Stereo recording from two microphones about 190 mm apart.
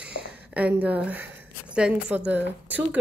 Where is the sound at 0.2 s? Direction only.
90° left.